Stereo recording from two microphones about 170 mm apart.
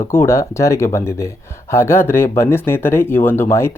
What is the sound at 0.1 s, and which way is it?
Speech, 15° left (ahead or behind).